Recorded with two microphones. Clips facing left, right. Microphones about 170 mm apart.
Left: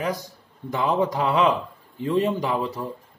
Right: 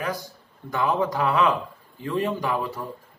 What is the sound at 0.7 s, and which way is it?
A man's voice, 20° left (ahead or behind).